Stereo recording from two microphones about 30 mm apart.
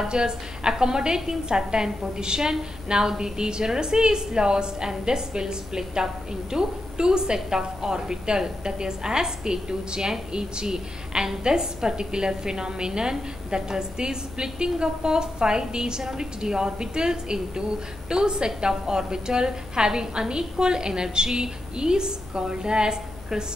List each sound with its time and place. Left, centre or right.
0.1 s a woman's voice: right
16.0 s a woman's voice: centre
16.3 s a woman's voice: right